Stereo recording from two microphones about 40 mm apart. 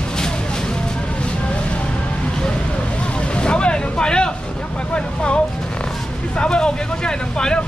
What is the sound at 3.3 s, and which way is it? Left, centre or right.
Speech, left.